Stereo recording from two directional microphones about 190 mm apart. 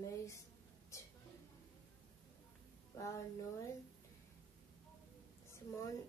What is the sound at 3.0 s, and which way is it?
Speech, 15° left (ahead or behind).